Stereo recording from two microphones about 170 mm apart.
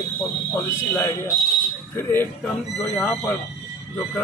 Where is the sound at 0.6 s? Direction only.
15° left (ahead or behind).